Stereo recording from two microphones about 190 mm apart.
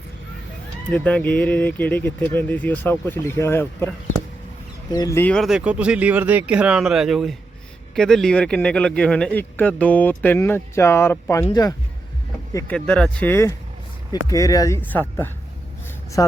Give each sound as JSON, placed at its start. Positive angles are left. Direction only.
{"t": 0.9, "sound": "a man's voice", "side_deg": 5}
{"t": 12.5, "sound": "a man's voice", "side_deg": 5}